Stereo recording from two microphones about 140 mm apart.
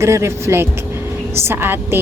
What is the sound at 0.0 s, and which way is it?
A woman's voice, 20° right (ahead or behind).